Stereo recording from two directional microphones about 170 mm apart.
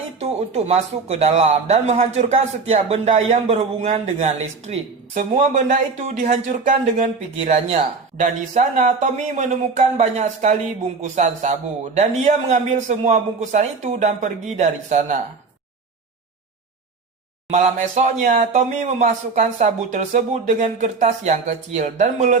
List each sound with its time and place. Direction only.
0.2 s speech: 40° right (ahead or behind)
17.5 s speech: 45° right (ahead or behind)